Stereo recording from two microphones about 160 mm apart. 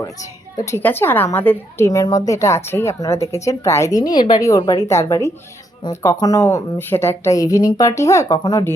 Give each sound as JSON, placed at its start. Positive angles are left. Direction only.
{"t": 0.0, "sound": "a woman's voice", "side_deg": 20}